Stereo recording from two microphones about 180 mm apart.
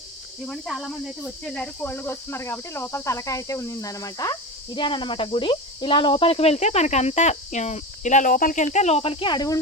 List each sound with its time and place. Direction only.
0.4 s speech: 5° left (ahead or behind)
1.5 s cricket: 10° left (ahead or behind)